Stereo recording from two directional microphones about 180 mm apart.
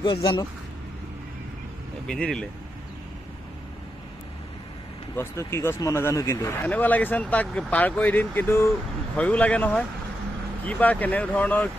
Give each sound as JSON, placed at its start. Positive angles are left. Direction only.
{"t": 0.0, "sound": "speech", "side_deg": 25}
{"t": 2.0, "sound": "speech", "side_deg": 5}
{"t": 5.1, "sound": "speech", "side_deg": 15}